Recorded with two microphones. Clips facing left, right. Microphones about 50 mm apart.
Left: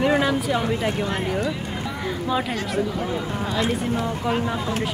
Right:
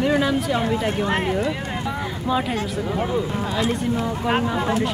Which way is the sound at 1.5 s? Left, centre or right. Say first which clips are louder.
Right 2 dB; right.